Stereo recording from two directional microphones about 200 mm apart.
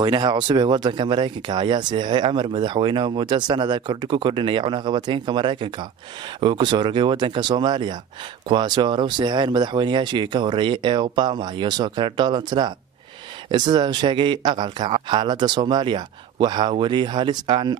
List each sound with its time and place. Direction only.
0.0 s speech: 20° right (ahead or behind)